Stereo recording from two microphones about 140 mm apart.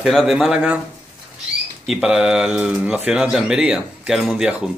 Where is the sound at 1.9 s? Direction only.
5° right (ahead or behind).